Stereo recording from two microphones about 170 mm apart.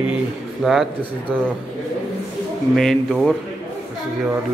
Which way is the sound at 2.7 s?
5° left (ahead or behind).